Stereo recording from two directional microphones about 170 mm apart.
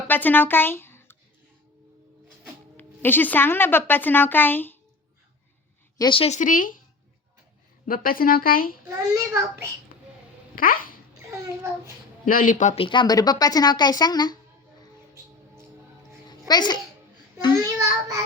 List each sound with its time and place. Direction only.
0.1 s speech: 10° left (ahead or behind)
2.7 s speech: 10° left (ahead or behind)
6.0 s speech: 30° left (ahead or behind); by 6.7 s 50° left (ahead or behind)
7.9 s speech: 60° left (ahead or behind)
9.0 s a child's voice: 20° right (ahead or behind)
10.5 s speech: 55° left (ahead or behind)
12.2 s speech: 50° left (ahead or behind)
12.7 s a woman's voice: 30° left (ahead or behind)
16.5 s a woman's voice: 25° left (ahead or behind)
17.6 s a child's voice: 20° right (ahead or behind)